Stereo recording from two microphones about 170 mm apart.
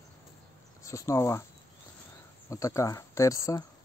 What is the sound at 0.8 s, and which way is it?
Speech, 20° left (ahead or behind).